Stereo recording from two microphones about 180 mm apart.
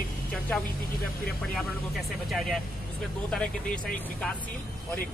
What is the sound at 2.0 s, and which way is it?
Speech, centre (ahead or behind).